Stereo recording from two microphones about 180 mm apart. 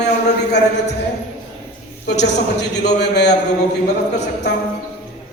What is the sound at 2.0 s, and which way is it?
A man's voice, 70° left (ahead or behind).